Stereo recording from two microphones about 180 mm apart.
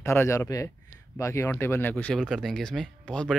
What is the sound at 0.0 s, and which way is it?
Speech, 15° left (ahead or behind).